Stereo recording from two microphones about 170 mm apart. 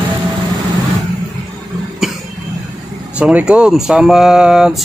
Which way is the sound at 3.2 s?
5° right (ahead or behind).